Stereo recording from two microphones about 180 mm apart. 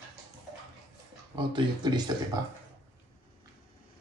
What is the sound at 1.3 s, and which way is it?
Speech, 25° right (ahead or behind).